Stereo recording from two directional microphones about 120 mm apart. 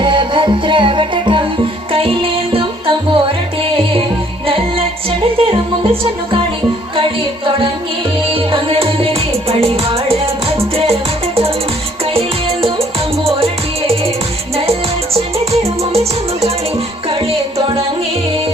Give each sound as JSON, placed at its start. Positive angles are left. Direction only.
{"t": 0.0, "sound": "music", "side_deg": -45}
{"t": 4.4, "sound": "music", "side_deg": -50}
{"t": 12.1, "sound": "music", "side_deg": -55}